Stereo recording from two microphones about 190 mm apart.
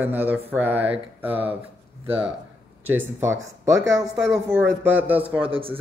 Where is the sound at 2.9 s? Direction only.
10° right (ahead or behind).